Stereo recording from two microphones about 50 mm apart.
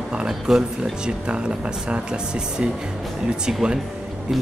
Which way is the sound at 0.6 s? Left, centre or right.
Centre.